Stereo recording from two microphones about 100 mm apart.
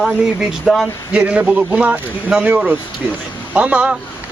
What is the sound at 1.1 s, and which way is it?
Speech, 10° right (ahead or behind).